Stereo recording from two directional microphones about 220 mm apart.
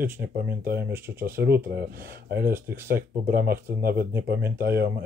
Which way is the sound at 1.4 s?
45° right (ahead or behind).